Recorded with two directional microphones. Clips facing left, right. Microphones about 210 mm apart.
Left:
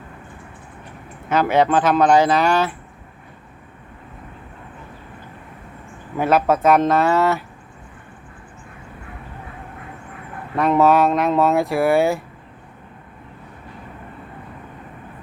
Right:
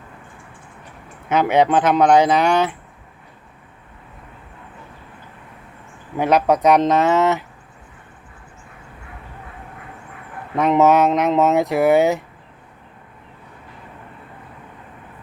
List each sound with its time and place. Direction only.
1.3 s speech: 20° right (ahead or behind)
6.1 s speech: 15° right (ahead or behind)
10.5 s speech: 20° right (ahead or behind)